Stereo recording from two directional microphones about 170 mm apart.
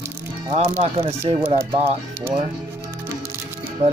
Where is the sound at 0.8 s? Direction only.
35° right (ahead or behind).